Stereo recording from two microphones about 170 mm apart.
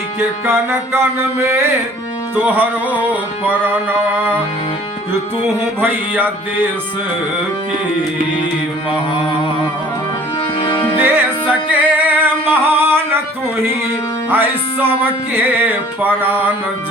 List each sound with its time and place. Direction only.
0.2 s music: 15° right (ahead or behind)
5.8 s music: 10° right (ahead or behind)
10.6 s music: 30° left (ahead or behind)
11.0 s music: 10° right (ahead or behind)
14.3 s music: 10° right (ahead or behind)